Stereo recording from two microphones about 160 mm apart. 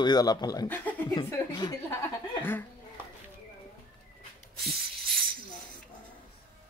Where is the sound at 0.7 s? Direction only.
10° left (ahead or behind).